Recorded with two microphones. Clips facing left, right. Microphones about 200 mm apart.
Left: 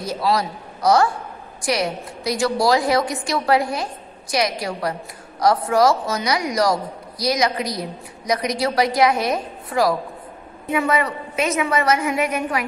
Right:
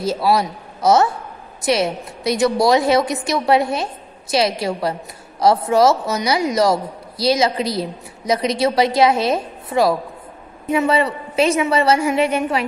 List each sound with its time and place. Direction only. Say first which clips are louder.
0.0 s a woman's voice: right 4 dB; 25° right (ahead or behind)